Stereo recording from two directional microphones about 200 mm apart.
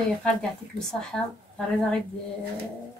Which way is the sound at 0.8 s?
5° left (ahead or behind).